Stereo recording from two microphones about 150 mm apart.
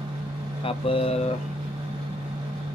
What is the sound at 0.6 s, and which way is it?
Speech, 40° left (ahead or behind).